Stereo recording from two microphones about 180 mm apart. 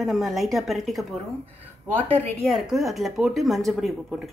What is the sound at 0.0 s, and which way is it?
Speech, centre (ahead or behind).